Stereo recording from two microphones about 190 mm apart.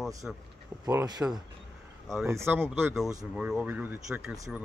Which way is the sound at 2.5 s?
10° right (ahead or behind).